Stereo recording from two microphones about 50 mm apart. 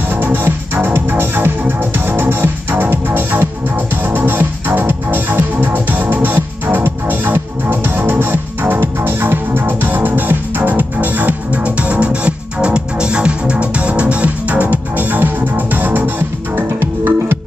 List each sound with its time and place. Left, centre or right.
0.1 s music: right